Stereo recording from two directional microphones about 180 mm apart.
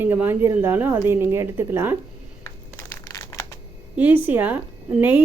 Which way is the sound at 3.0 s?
20° left (ahead or behind).